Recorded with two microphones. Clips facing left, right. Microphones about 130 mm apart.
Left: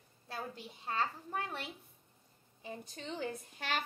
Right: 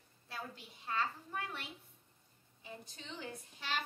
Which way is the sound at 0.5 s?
35° left (ahead or behind).